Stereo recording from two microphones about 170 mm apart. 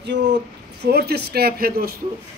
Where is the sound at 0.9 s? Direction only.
70° right (ahead or behind).